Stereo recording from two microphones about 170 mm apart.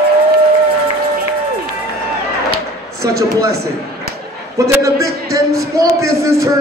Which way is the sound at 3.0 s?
20° right (ahead or behind).